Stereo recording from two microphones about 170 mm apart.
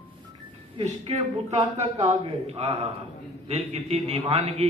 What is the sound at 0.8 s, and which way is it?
A man's voice, 40° right (ahead or behind).